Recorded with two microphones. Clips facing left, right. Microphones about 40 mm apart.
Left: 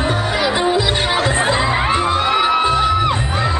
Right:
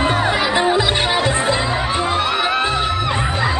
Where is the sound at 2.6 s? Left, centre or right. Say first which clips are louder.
Left 3 dB; centre.